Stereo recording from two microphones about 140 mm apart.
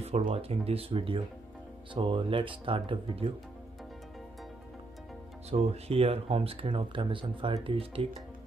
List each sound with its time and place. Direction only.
0.0 s speech: 45° right (ahead or behind)
5.5 s speech: 45° right (ahead or behind)